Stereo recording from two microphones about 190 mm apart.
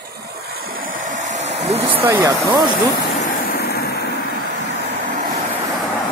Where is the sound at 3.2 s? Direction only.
50° left (ahead or behind).